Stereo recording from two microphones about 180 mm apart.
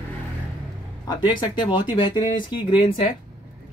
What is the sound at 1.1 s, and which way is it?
Speech, 25° left (ahead or behind).